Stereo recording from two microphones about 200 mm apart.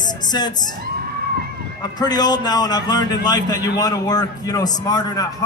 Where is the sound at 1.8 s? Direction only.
20° left (ahead or behind).